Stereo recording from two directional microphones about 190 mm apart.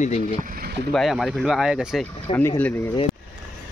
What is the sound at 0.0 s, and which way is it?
Speech, 45° left (ahead or behind).